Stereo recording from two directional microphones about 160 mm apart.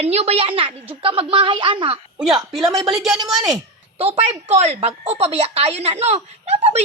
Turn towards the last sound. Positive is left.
turn(degrees=-40)  # may be behind; listen again after turning